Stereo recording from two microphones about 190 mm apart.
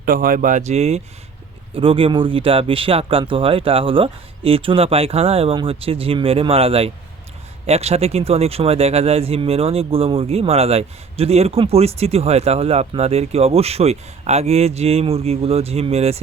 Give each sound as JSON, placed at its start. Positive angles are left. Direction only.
{"t": 0.0, "sound": "speech", "side_deg": -50}